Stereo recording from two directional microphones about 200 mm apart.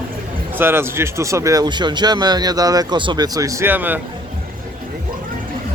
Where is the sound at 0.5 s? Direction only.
10° right (ahead or behind).